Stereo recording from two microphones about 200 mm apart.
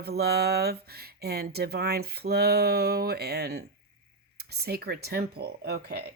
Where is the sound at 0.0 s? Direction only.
55° right (ahead or behind).